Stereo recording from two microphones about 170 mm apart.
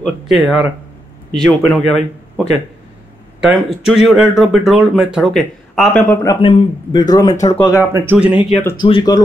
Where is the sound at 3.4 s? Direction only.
Centre (ahead or behind).